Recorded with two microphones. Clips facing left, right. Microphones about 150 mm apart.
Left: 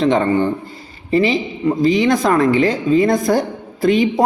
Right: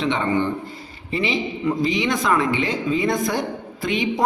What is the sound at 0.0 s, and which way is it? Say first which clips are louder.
A woman's voice: left 6 dB; 40° left (ahead or behind).